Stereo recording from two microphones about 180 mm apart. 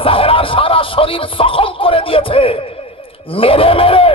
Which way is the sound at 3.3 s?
30° left (ahead or behind).